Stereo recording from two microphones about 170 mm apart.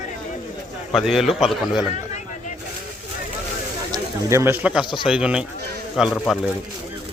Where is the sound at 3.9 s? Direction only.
15° right (ahead or behind); by 6.3 s centre (ahead or behind).